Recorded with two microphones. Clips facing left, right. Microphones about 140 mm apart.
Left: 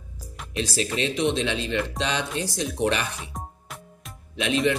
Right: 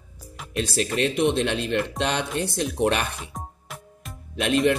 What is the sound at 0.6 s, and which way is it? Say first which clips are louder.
A man's voice: right 2 dB; 55° right (ahead or behind).